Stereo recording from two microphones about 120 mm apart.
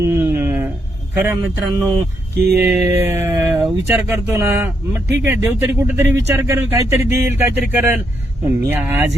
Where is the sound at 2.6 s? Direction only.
10° right (ahead or behind).